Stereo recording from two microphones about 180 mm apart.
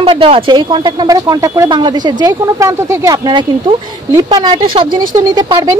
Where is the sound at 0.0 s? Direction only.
30° right (ahead or behind).